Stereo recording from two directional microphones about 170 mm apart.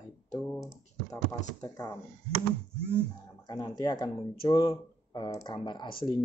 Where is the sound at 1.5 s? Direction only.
20° left (ahead or behind).